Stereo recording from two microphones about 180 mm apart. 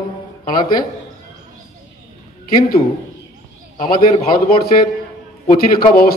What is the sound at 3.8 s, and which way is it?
A man's voice, 50° left (ahead or behind).